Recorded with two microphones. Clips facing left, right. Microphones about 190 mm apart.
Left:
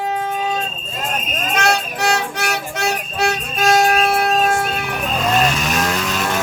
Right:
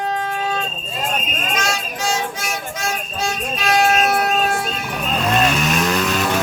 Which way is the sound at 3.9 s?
30° left (ahead or behind).